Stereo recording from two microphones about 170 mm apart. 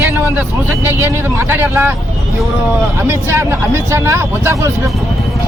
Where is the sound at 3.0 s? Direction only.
15° right (ahead or behind).